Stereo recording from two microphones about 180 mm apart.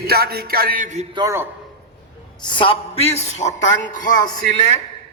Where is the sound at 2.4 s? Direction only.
25° left (ahead or behind); by 4.1 s 45° left (ahead or behind).